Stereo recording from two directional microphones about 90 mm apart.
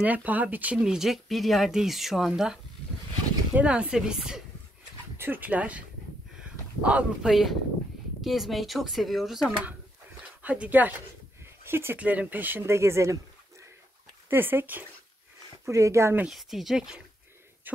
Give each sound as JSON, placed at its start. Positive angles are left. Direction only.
{"t": 0.0, "sound": "speech", "side_deg": -15}
{"t": 0.7, "sound": "speech", "side_deg": -5}
{"t": 5.1, "sound": "speech", "side_deg": -25}
{"t": 8.2, "sound": "speech", "side_deg": 0}
{"t": 10.4, "sound": "speech", "side_deg": -15}
{"t": 14.3, "sound": "speech", "side_deg": -25}
{"t": 15.6, "sound": "speech", "side_deg": -35}
{"t": 16.3, "sound": "speech", "side_deg": 0}
{"t": 17.7, "sound": "a sound", "side_deg": -20}